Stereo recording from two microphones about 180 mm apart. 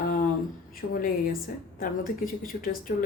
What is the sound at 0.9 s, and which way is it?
Speech, 55° left (ahead or behind).